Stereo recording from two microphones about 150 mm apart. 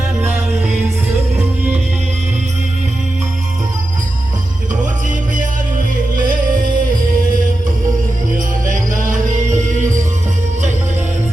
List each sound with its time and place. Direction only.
0.2 s music: 10° right (ahead or behind)
5.0 s music: 60° right (ahead or behind)